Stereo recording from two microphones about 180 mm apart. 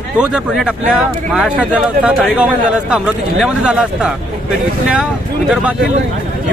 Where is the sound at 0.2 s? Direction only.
5° right (ahead or behind).